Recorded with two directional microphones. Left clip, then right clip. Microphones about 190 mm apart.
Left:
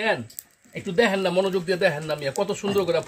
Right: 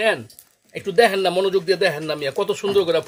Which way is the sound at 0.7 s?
30° right (ahead or behind).